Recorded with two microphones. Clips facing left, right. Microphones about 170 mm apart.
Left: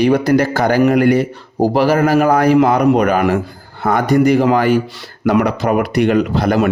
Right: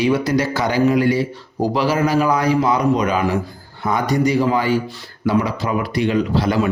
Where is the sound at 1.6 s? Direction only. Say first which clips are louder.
Left 5 dB; 50° left (ahead or behind).